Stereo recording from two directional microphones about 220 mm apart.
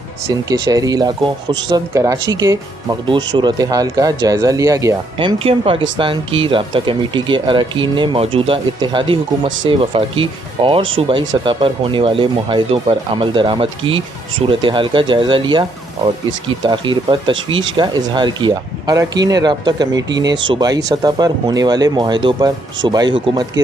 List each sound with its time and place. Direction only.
0.3 s speech: 15° right (ahead or behind)